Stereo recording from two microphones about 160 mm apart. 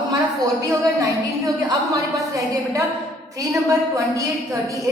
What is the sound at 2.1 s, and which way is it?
A woman's voice, 20° right (ahead or behind).